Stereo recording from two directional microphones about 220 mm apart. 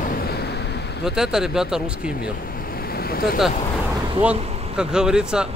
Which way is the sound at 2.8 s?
45° left (ahead or behind).